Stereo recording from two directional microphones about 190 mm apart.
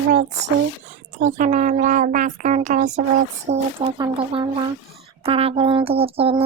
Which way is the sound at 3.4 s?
35° right (ahead or behind).